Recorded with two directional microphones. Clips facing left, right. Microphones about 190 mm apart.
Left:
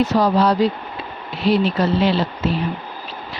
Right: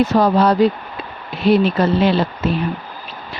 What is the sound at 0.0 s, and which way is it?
Speech, 55° right (ahead or behind).